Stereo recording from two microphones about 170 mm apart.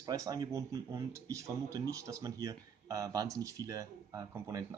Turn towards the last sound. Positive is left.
turn(degrees=-20)  # may be behind; listen again after turning